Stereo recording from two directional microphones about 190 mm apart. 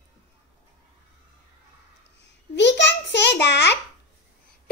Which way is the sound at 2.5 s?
65° left (ahead or behind).